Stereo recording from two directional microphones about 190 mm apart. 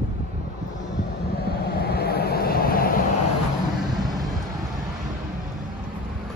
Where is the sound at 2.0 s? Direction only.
55° left (ahead or behind).